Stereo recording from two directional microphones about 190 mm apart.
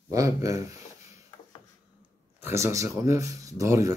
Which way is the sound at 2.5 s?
15° right (ahead or behind).